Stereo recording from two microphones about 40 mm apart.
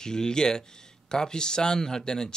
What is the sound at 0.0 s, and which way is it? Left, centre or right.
Speech, centre.